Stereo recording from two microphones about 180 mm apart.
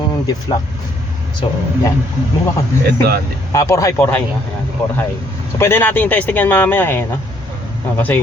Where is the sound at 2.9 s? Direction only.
60° right (ahead or behind).